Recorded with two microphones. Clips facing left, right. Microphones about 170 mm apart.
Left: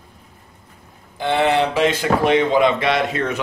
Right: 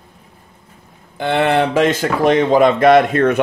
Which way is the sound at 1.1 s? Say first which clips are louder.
Right 2 dB; 60° right (ahead or behind).